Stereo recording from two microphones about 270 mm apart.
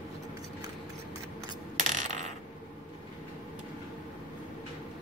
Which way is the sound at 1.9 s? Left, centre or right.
Right.